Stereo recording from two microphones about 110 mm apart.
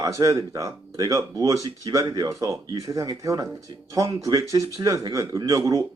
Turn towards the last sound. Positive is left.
turn(degrees=-30)  # may be behind; listen again after turning